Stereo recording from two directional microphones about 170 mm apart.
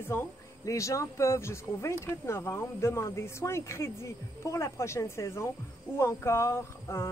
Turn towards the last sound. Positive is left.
turn(degrees=15)  # may be behind; listen again after turning